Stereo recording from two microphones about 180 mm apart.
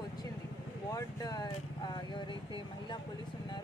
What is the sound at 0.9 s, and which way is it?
Speech, 20° left (ahead or behind).